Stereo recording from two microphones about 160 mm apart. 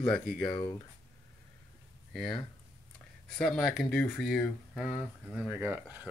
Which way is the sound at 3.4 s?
Centre (ahead or behind).